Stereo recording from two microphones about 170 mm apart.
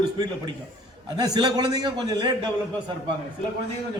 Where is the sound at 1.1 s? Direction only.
25° right (ahead or behind).